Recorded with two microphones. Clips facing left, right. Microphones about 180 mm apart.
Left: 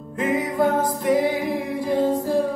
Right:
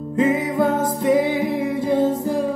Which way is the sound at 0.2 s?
25° right (ahead or behind).